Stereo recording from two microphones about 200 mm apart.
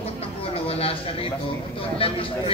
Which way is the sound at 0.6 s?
30° left (ahead or behind).